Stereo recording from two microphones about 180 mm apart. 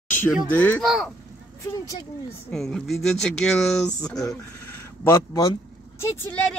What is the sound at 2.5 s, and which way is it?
Speech, centre (ahead or behind).